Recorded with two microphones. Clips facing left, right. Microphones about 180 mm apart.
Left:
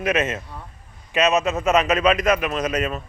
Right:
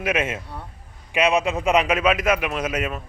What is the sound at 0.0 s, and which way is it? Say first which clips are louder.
Speech: left 2 dB; 10° right (ahead or behind).